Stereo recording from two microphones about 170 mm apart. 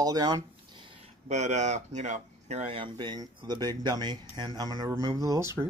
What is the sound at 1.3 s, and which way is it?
Speech, 45° right (ahead or behind).